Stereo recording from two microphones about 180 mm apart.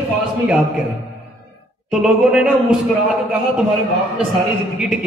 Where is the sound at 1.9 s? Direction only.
5° right (ahead or behind).